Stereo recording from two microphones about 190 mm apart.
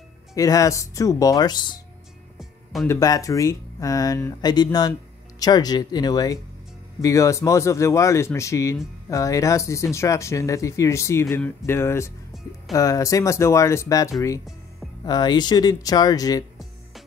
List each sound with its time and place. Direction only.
0.3 s speech: 20° left (ahead or behind)
2.3 s music: centre (ahead or behind)
2.9 s speech: 20° left (ahead or behind)